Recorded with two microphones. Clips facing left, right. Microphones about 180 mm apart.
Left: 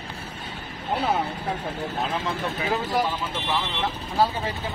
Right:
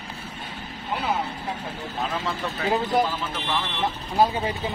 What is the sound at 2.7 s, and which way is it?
Speech, 20° right (ahead or behind).